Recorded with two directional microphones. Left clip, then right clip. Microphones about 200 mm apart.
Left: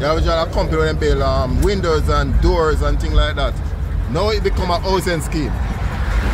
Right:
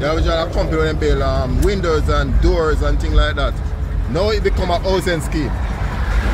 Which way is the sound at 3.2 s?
5° left (ahead or behind).